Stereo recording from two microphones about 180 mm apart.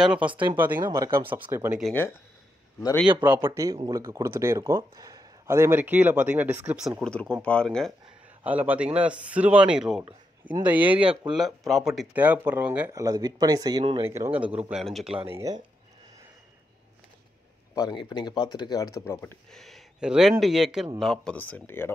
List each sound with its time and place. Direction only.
0.0 s a man's voice: 5° right (ahead or behind)
0.3 s speech: 25° right (ahead or behind)
0.6 s speech: 10° right (ahead or behind)
3.3 s a man's voice: 15° right (ahead or behind); by 7.9 s 5° left (ahead or behind)
8.5 s speech: 10° right (ahead or behind); by 14.0 s 25° right (ahead or behind)
14.0 s a man's voice: 15° right (ahead or behind)
15.2 s speech: 15° right (ahead or behind)
17.7 s speech: 25° left (ahead or behind)
19.5 s a man's voice: centre (ahead or behind)